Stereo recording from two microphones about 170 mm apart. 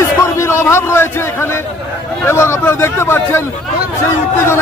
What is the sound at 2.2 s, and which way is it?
A man's voice, 15° left (ahead or behind).